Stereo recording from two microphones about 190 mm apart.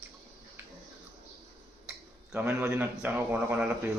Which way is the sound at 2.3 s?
10° right (ahead or behind).